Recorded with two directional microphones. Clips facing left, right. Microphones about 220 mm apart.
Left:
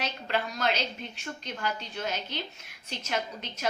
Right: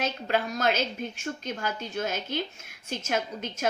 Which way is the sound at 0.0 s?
45° right (ahead or behind).